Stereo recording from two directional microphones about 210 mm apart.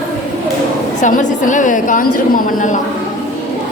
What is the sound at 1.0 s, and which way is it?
A woman's voice, 35° left (ahead or behind).